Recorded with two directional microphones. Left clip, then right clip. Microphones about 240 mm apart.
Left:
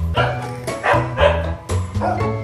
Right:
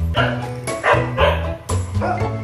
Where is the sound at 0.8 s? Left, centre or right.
Left.